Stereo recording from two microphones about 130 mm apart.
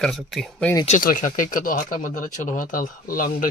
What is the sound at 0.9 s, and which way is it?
Speech, 90° left.